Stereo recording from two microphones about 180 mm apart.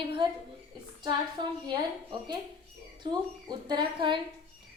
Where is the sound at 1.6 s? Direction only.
25° right (ahead or behind).